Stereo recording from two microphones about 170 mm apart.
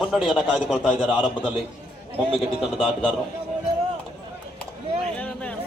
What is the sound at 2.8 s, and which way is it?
Speech, 5° left (ahead or behind).